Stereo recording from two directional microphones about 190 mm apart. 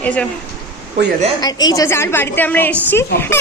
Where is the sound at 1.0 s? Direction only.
65° right (ahead or behind).